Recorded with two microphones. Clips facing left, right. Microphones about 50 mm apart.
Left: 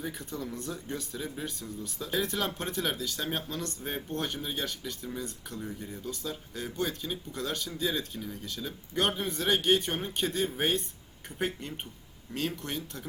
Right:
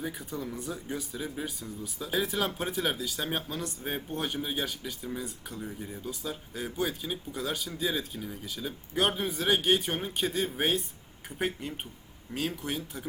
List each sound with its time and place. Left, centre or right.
0.0 s speech: centre